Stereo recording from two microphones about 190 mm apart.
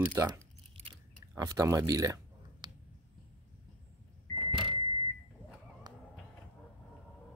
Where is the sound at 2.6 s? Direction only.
25° right (ahead or behind).